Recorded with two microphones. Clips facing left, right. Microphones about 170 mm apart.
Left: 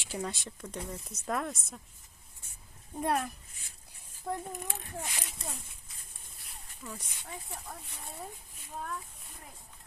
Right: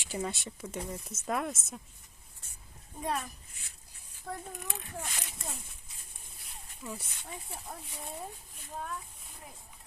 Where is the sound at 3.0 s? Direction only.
55° left (ahead or behind).